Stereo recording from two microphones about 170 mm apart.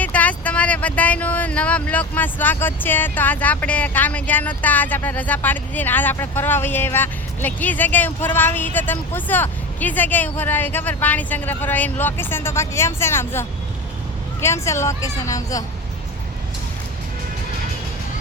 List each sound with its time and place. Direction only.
0.0 s speech: 10° left (ahead or behind)